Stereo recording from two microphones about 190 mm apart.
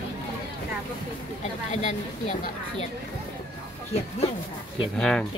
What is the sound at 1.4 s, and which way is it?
Speech, 35° left (ahead or behind).